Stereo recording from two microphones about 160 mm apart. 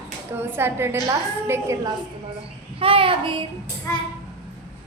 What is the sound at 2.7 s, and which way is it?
Child singing, 35° right (ahead or behind).